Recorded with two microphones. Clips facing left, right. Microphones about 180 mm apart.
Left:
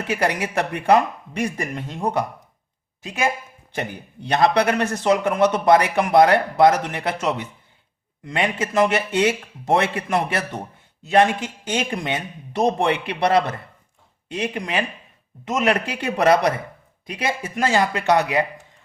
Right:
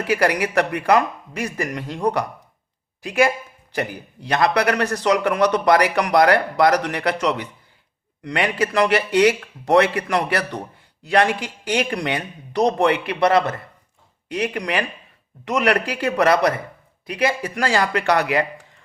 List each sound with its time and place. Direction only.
0.1 s a man's voice: 25° left (ahead or behind)